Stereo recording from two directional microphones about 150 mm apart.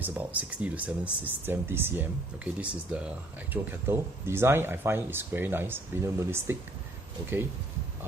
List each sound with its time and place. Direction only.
0.0 s speech: 10° right (ahead or behind)